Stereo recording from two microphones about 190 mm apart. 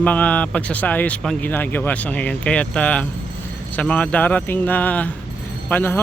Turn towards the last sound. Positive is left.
turn(degrees=10)  # may be behind; listen again after turning